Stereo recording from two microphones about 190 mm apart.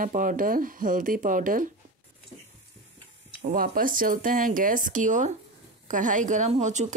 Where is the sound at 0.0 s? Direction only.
45° right (ahead or behind).